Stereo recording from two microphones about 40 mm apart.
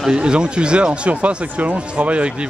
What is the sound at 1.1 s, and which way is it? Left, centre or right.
Speech, right.